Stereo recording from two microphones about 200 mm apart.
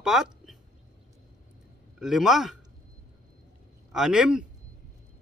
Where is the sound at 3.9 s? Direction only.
5° right (ahead or behind).